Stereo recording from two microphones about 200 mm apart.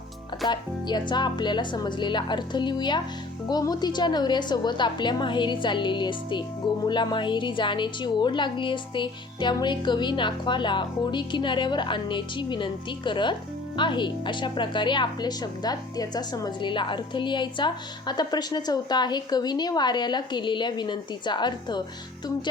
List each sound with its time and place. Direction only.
0.4 s speech: 20° left (ahead or behind)